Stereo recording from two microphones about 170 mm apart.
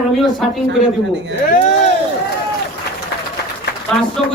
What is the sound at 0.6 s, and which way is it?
Speech, 90° right.